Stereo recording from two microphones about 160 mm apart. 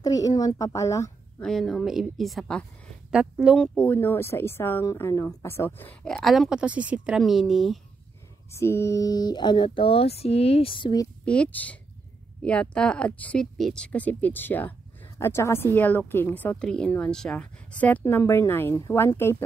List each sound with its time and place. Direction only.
0.0 s speech: 20° left (ahead or behind)
1.4 s a woman's voice: centre (ahead or behind)
8.5 s speech: 15° left (ahead or behind)
11.2 s speech: 10° left (ahead or behind)